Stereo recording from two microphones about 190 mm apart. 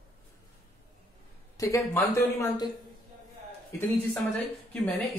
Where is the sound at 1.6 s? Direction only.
15° left (ahead or behind).